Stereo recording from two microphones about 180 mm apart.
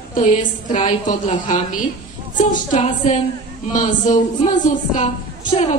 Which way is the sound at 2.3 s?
45° left (ahead or behind).